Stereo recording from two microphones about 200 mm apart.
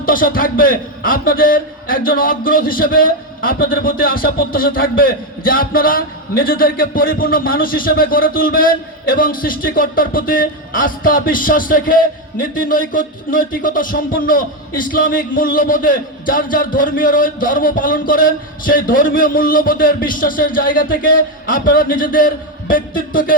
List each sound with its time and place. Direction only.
0.0 s a man's voice: 45° left (ahead or behind)